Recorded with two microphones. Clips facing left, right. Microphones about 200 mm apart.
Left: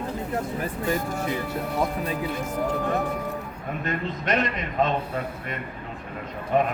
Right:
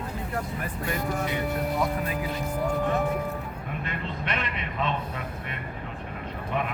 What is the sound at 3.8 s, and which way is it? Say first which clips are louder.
A man's voice: left 8 dB; 45° left (ahead or behind).